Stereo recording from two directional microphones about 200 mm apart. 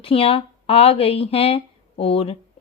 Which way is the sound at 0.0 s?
25° left (ahead or behind).